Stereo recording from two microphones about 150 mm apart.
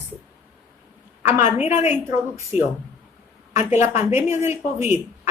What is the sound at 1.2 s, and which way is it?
Speech, 15° right (ahead or behind).